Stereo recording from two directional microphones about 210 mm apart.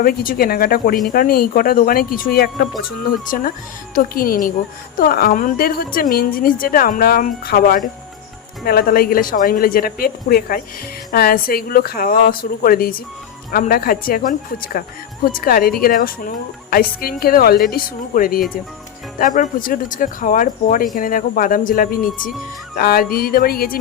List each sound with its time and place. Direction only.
0.0 s a woman's voice: 45° left (ahead or behind)